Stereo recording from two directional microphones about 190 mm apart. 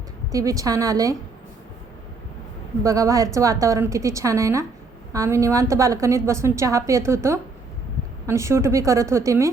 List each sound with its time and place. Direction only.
0.3 s a woman's voice: 15° right (ahead or behind)
2.8 s a woman's voice: 15° right (ahead or behind)